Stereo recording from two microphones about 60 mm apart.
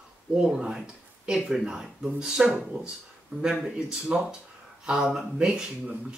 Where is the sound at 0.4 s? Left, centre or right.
Centre.